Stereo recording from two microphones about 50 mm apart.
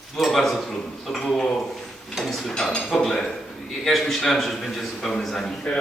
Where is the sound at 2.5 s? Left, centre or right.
Centre.